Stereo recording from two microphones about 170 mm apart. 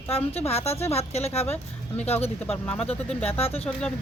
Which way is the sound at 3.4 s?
35° left (ahead or behind).